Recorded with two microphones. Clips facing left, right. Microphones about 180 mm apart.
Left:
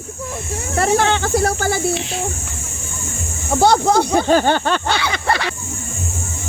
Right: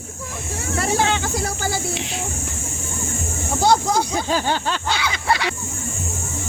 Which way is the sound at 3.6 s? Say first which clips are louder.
Left 4 dB; 60° left (ahead or behind).